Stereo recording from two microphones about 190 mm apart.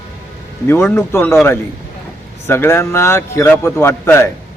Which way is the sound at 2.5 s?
10° left (ahead or behind).